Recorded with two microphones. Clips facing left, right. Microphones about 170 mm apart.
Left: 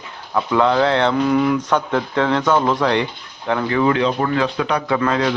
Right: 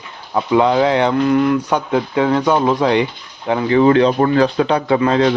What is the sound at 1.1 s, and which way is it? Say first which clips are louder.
Speech: right 2 dB; centre (ahead or behind).